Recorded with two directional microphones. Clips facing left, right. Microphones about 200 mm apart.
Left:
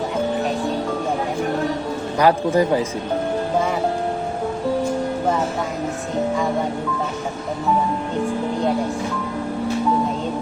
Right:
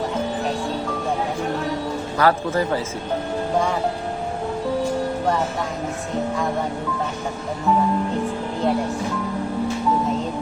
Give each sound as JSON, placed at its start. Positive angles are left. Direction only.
{"t": 2.1, "sound": "a man's voice", "side_deg": 15}